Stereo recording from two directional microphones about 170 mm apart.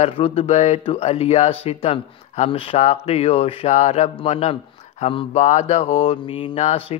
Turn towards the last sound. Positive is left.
turn(degrees=35)  # may be behind; listen again after turning